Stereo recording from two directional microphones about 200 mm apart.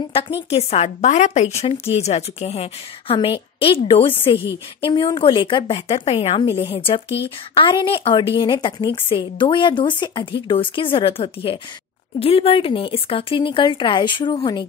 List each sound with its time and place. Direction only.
0.5 s a woman's voice: 30° left (ahead or behind)